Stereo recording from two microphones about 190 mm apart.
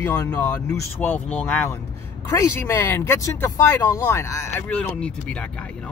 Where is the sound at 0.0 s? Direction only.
10° left (ahead or behind).